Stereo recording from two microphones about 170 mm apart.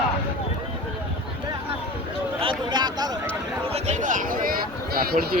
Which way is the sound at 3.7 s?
45° right (ahead or behind).